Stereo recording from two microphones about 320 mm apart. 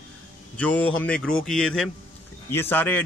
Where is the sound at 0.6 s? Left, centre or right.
Centre.